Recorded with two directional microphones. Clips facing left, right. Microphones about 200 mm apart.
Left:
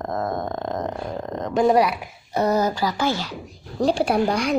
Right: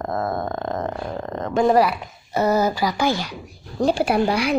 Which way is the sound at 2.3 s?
5° right (ahead or behind).